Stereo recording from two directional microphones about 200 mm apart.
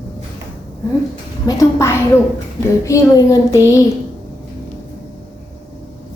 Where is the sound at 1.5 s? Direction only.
15° left (ahead or behind).